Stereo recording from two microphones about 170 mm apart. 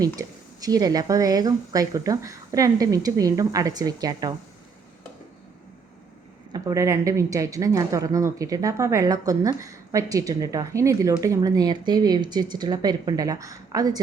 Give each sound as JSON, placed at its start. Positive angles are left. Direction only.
{"t": 0.0, "sound": "a woman's voice", "side_deg": -20}
{"t": 6.5, "sound": "a woman's voice", "side_deg": -20}